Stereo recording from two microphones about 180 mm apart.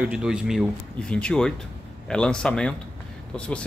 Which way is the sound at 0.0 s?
5° right (ahead or behind).